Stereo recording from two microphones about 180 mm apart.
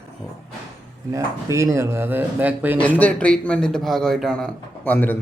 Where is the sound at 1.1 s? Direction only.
15° right (ahead or behind).